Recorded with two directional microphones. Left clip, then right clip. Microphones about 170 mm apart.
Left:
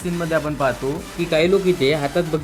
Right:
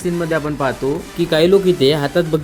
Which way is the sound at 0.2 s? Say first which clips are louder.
Left 1 dB; 15° right (ahead or behind).